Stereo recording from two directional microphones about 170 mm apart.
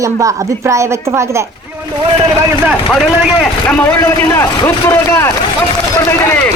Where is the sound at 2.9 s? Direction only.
5° left (ahead or behind).